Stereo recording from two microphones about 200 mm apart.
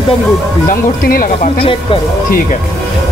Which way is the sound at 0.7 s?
45° left (ahead or behind).